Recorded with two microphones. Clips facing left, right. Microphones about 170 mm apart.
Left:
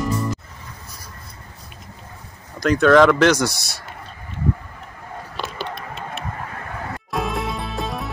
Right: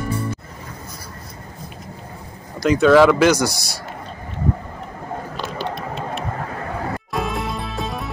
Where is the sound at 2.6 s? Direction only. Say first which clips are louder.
Right 1 dB; 10° right (ahead or behind).